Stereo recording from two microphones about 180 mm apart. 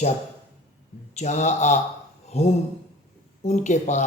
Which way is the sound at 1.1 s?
40° left (ahead or behind).